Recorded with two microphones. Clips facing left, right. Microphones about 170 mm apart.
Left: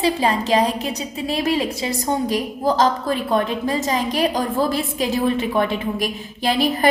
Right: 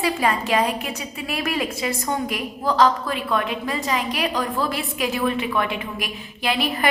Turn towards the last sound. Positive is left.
turn(degrees=35)  # may be behind; listen again after turning